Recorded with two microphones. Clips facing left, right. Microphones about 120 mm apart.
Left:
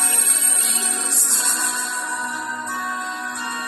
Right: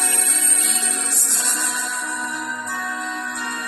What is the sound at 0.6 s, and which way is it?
Music, 30° left (ahead or behind).